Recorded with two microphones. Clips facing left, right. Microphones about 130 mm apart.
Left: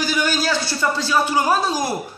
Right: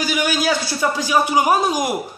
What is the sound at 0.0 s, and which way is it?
Speech, 10° right (ahead or behind).